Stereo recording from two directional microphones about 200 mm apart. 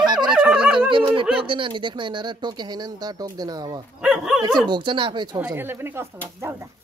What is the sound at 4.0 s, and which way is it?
Speech, 5° right (ahead or behind).